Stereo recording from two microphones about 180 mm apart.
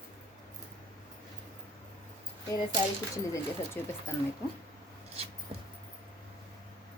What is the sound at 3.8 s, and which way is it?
Speech, 10° left (ahead or behind).